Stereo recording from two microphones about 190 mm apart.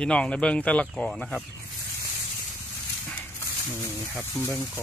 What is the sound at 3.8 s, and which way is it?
Speech, 15° left (ahead or behind).